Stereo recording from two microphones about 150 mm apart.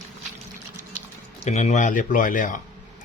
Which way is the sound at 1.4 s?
50° left (ahead or behind).